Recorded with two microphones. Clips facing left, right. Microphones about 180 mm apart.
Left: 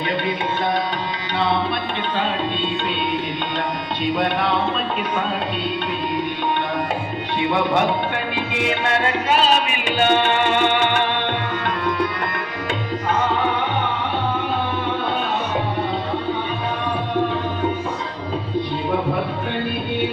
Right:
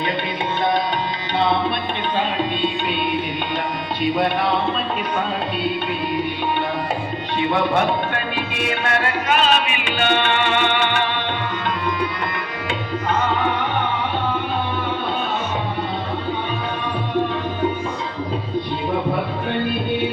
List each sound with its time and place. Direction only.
8.6 s music: 20° left (ahead or behind)
9.4 s music: 40° left (ahead or behind)